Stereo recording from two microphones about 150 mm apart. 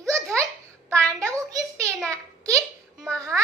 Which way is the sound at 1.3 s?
20° right (ahead or behind).